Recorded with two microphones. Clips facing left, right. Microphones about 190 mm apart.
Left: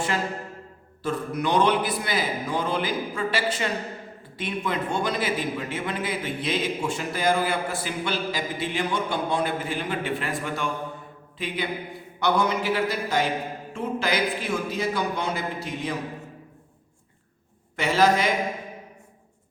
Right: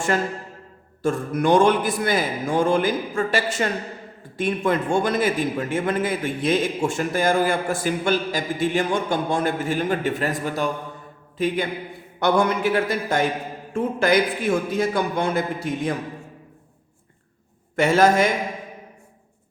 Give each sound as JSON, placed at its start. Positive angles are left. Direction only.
{"t": 1.0, "sound": "a man's voice", "side_deg": -50}
{"t": 17.7, "sound": "a man's voice", "side_deg": -50}